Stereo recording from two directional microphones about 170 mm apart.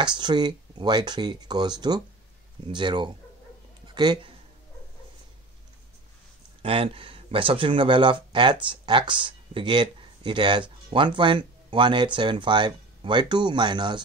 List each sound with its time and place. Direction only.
0.0 s speech: 25° right (ahead or behind)
6.6 s speech: 35° right (ahead or behind)